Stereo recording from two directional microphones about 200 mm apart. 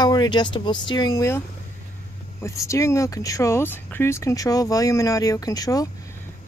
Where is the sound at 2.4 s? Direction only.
15° left (ahead or behind).